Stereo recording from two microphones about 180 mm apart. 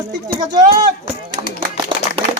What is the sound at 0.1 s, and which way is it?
Speech, 20° right (ahead or behind).